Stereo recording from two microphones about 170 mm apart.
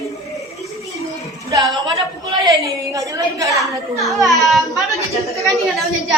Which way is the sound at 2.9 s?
20° right (ahead or behind).